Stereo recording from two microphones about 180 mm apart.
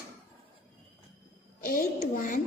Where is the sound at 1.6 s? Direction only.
50° left (ahead or behind).